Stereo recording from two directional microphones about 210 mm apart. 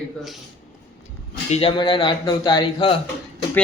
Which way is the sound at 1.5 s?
25° left (ahead or behind).